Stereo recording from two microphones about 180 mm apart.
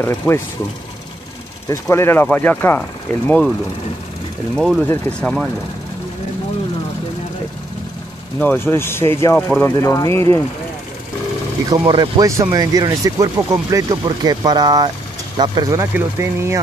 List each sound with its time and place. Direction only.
0.0 s speech: 15° left (ahead or behind)
1.7 s speech: 15° left (ahead or behind)
4.6 s speech: centre (ahead or behind)
8.4 s speech: 10° left (ahead or behind)
11.7 s speech: 25° right (ahead or behind)